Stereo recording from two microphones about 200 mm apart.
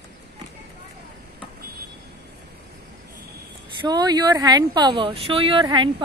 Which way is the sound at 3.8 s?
20° right (ahead or behind).